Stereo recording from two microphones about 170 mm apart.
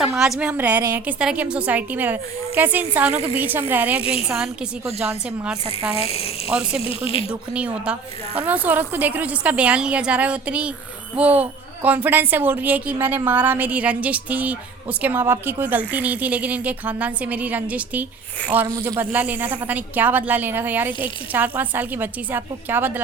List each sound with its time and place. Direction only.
0.2 s speech: 5° right (ahead or behind)
6.0 s speech: 35° left (ahead or behind)
6.5 s speech: 5° right (ahead or behind)
6.8 s speech: 35° left (ahead or behind)
7.3 s speech: 5° right (ahead or behind)